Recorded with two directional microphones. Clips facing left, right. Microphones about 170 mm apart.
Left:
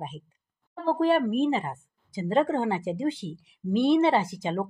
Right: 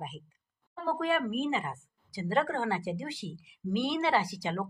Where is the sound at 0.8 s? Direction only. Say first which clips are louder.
Left 7 dB; 30° left (ahead or behind).